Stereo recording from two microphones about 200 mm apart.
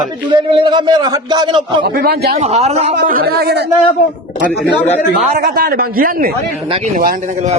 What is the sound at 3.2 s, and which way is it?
Speech, 50° right (ahead or behind).